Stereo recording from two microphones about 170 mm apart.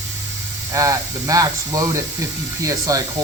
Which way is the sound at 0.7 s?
20° right (ahead or behind).